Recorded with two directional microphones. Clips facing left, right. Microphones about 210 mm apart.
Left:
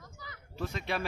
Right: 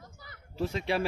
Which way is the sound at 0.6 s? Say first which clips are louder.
Right 5 dB; 30° right (ahead or behind).